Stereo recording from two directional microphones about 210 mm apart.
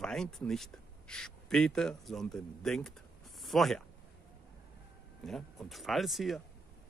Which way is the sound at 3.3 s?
Centre (ahead or behind).